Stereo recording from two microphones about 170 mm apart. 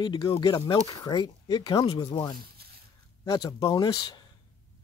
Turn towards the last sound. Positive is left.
turn(degrees=25)  # may be behind; listen again after turning